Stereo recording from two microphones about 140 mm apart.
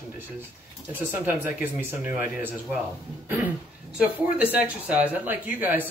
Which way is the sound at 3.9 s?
10° right (ahead or behind).